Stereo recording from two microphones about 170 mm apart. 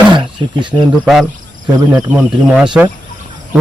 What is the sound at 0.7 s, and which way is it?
Speech, centre (ahead or behind).